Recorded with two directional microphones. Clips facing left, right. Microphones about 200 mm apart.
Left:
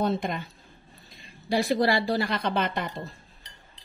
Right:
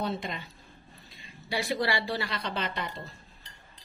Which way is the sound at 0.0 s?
50° left (ahead or behind).